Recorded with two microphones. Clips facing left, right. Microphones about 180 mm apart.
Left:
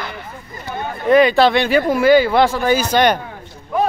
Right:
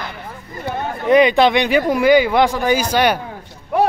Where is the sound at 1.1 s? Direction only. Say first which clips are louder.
Even; 20° right (ahead or behind).